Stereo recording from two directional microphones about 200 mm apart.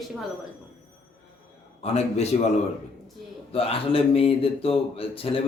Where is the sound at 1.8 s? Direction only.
30° left (ahead or behind).